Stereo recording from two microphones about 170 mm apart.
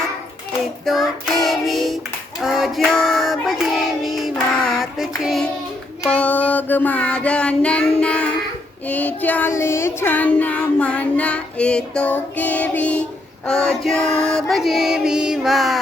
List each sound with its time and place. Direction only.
0.9 s music: centre (ahead or behind)
2.4 s child singing: centre (ahead or behind)
13.5 s music: 5° left (ahead or behind)